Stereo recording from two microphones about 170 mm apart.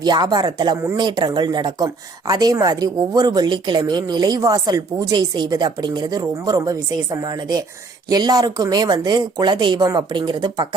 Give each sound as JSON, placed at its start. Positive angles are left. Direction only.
{"t": 0.0, "sound": "speech", "side_deg": -25}